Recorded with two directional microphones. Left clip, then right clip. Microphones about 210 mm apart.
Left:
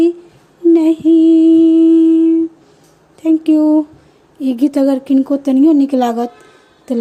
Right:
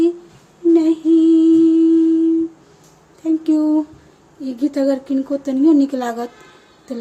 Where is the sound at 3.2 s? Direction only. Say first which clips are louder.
Left 5 dB; 30° left (ahead or behind).